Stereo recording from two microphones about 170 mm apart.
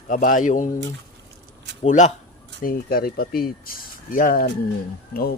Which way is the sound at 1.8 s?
45° left (ahead or behind).